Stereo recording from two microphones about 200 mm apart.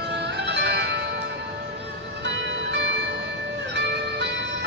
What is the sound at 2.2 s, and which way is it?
Music, 60° right (ahead or behind).